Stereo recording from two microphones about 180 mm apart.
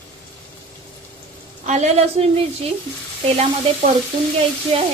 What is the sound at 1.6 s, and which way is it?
Speech, 40° right (ahead or behind).